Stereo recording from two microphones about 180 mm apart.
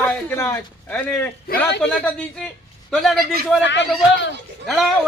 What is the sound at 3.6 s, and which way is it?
Speech, 80° left.